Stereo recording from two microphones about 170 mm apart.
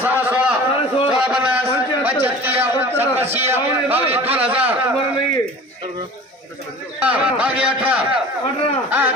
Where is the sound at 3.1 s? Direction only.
40° right (ahead or behind).